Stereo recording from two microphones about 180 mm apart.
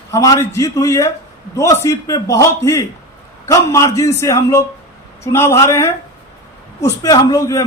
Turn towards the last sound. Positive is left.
turn(degrees=20)  # may be behind; listen again after turning